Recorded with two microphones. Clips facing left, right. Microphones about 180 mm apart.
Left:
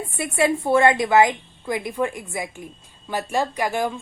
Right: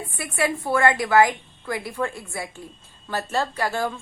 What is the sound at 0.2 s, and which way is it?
A woman's voice, 25° left (ahead or behind).